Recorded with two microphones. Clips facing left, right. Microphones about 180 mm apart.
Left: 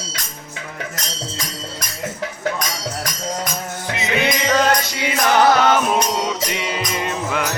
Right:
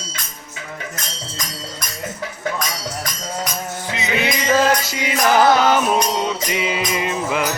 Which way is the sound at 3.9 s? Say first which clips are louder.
Left 2 dB; centre (ahead or behind).